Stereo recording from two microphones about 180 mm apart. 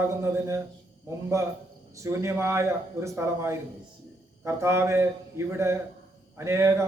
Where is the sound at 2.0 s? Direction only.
15° right (ahead or behind).